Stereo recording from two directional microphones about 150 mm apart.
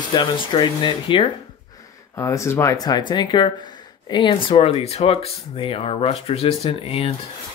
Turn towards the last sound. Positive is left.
turn(degrees=40)  # may be behind; listen again after turning